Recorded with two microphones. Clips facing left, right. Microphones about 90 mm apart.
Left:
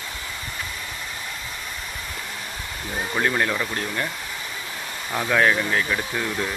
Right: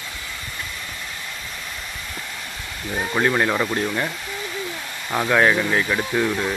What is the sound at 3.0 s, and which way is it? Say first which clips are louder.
Speech: right 3 dB; 10° right (ahead or behind).